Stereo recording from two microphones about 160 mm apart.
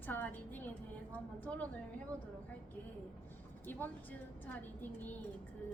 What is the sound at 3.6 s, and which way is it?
A woman's voice, 10° left (ahead or behind).